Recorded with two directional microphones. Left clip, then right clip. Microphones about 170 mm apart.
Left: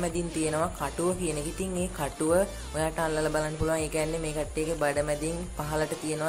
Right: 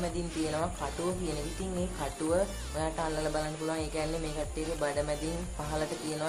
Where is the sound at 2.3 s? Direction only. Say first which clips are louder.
Left 4 dB; 25° left (ahead or behind).